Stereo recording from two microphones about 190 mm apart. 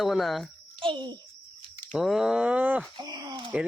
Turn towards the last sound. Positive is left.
turn(degrees=-20)  # may be behind; listen again after turning